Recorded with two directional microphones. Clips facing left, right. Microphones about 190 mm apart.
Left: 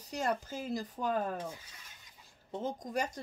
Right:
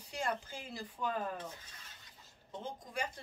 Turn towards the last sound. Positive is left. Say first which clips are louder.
# left 6 dB
turn(degrees=40)  # may be behind; listen again after turning